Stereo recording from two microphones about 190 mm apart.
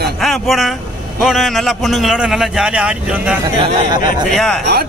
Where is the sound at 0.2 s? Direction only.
Centre (ahead or behind).